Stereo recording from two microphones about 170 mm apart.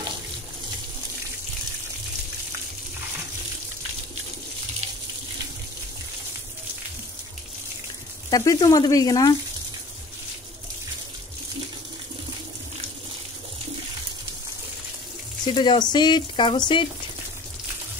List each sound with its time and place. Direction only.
8.3 s speech: 25° left (ahead or behind)
15.4 s speech: 25° left (ahead or behind)